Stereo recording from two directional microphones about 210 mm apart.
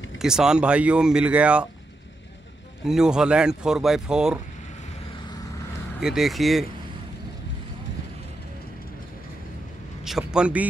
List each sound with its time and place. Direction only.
0.2 s speech: 5° right (ahead or behind)
2.8 s speech: centre (ahead or behind)
5.9 s speech: centre (ahead or behind)
10.0 s a man's voice: 5° right (ahead or behind)